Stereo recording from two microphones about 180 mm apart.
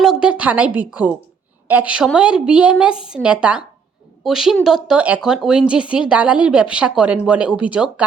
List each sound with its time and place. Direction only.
0.0 s a woman's voice: 5° right (ahead or behind)